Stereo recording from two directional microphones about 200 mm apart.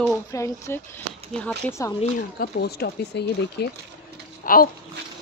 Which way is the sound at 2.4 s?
55° left (ahead or behind).